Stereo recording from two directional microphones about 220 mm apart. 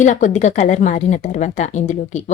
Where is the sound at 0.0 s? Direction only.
35° left (ahead or behind).